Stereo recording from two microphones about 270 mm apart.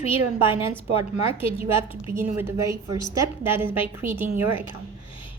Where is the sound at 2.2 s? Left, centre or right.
Centre.